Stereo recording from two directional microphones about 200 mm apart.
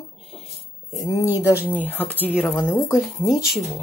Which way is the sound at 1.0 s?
15° left (ahead or behind).